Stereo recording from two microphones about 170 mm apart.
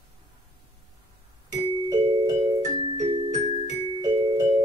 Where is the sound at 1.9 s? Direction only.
25° right (ahead or behind).